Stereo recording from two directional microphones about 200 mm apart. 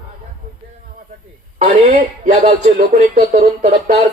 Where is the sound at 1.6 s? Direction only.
35° right (ahead or behind).